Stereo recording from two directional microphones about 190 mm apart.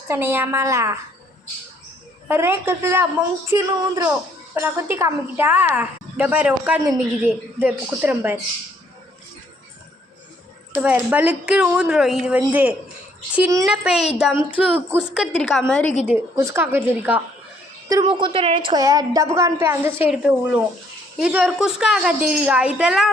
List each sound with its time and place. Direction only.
0.1 s a woman's voice: 10° right (ahead or behind)
2.2 s a woman's voice: 10° right (ahead or behind)
10.8 s a woman's voice: 10° right (ahead or behind)
16.0 s a woman's voice: 15° right (ahead or behind)
17.8 s a woman's voice: 20° right (ahead or behind); by 23.1 s centre (ahead or behind)